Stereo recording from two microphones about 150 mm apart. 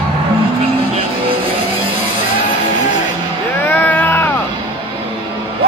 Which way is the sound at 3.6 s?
10° left (ahead or behind).